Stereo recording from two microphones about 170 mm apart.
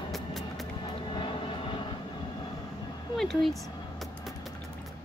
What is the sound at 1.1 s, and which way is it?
Vehicle, 30° left (ahead or behind).